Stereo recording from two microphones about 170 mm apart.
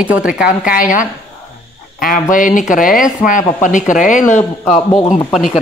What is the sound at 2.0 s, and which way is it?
A woman's voice, 50° left (ahead or behind).